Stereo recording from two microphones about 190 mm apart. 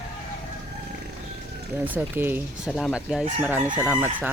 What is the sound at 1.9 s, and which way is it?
Speech, 10° right (ahead or behind).